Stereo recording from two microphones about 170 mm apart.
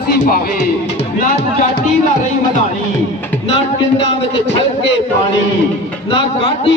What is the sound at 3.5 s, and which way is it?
Speech, 35° left (ahead or behind).